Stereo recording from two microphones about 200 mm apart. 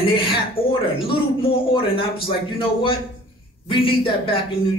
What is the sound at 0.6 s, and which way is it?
Speech, 30° left (ahead or behind).